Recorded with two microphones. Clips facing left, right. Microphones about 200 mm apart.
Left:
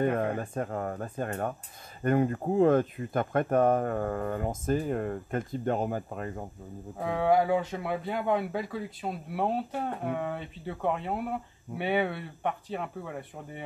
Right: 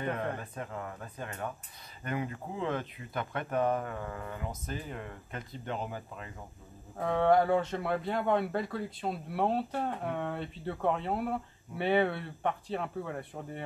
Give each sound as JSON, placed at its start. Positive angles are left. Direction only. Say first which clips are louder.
{"t": 0.0, "sound": "speech", "louder": "left 7 dB", "side_deg": 50}
{"t": 7.0, "sound": "speech", "louder": "even", "side_deg": 5}